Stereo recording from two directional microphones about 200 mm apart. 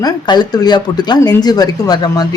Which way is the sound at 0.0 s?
20° left (ahead or behind).